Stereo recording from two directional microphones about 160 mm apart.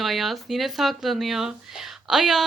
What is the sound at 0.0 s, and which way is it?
Speech, centre (ahead or behind).